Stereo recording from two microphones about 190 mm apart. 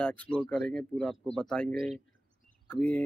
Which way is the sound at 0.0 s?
5° left (ahead or behind).